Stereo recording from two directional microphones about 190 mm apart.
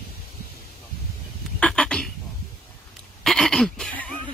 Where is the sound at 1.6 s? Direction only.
5° left (ahead or behind).